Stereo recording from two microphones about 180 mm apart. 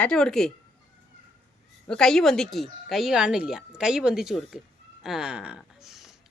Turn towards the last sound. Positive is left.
turn(degrees=0)  # may be behind; listen again after turning